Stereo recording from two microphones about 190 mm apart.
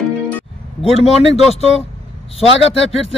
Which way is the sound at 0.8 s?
35° left (ahead or behind).